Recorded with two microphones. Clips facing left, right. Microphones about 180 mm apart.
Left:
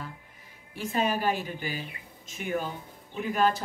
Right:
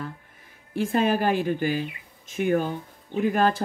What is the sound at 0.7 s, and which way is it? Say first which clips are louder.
Speech: right 6 dB; 50° right (ahead or behind).